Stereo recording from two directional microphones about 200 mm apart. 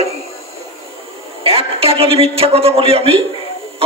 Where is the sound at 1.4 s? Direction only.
30° right (ahead or behind).